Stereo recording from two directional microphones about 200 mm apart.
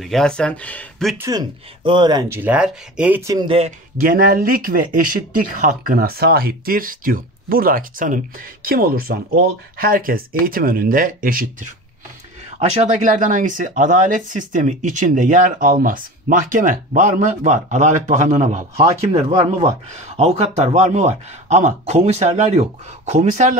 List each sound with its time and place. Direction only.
0.0 s speech: centre (ahead or behind)
1.1 s speech: 15° right (ahead or behind)
3.4 s speech: 30° right (ahead or behind)
4.0 s speech: 45° right (ahead or behind)
20.2 s speech: 30° right (ahead or behind)